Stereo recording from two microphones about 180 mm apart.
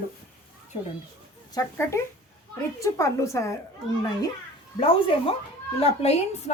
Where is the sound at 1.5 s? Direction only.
15° left (ahead or behind).